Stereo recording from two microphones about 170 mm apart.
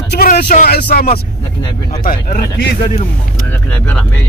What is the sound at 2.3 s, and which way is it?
Speech, 65° left (ahead or behind).